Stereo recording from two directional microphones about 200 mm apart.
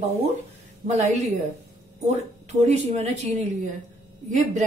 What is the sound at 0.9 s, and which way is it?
Speech, 35° right (ahead or behind).